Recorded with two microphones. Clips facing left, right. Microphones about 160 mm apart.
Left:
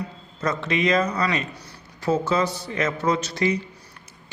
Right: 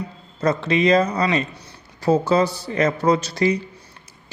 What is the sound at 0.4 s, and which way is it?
Speech, 30° right (ahead or behind).